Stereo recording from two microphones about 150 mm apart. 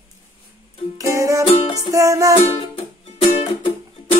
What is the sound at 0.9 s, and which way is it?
Music, 20° right (ahead or behind).